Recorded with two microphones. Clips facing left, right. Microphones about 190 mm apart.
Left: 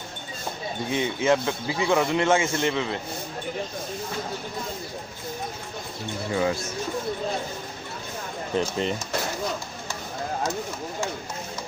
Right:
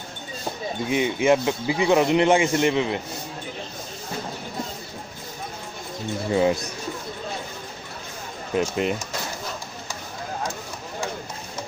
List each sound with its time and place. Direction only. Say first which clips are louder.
0.8 s speech: right 3 dB; 15° right (ahead or behind)
6.3 s speech: right 4 dB; 20° right (ahead or behind)
8.5 s speech: right 3 dB; 10° right (ahead or behind)